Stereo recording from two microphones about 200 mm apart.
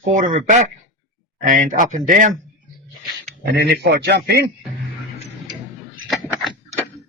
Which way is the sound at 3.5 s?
55° right (ahead or behind).